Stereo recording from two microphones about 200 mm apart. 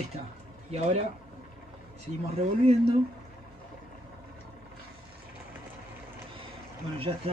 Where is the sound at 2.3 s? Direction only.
30° right (ahead or behind).